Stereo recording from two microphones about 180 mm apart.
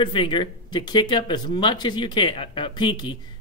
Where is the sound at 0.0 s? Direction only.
25° left (ahead or behind).